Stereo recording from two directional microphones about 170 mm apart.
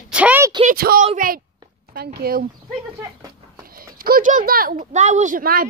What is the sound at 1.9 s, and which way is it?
Speech, 65° right (ahead or behind).